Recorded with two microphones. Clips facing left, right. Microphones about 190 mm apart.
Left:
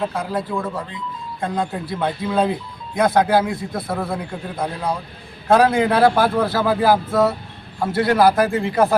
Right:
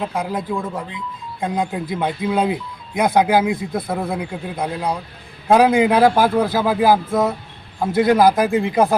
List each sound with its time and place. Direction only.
0.1 s speech: 15° right (ahead or behind)